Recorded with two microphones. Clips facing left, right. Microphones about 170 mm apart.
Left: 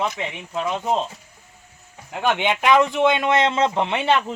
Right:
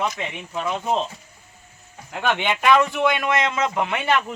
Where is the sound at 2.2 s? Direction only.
15° left (ahead or behind).